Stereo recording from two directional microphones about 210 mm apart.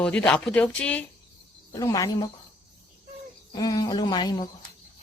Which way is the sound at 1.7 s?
15° left (ahead or behind).